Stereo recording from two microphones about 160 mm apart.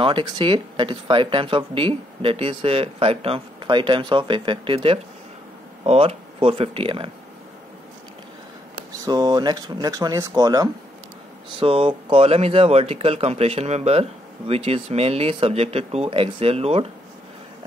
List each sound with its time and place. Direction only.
0.0 s speech: 30° right (ahead or behind)
9.0 s speech: 25° right (ahead or behind)
11.6 s speech: 35° right (ahead or behind)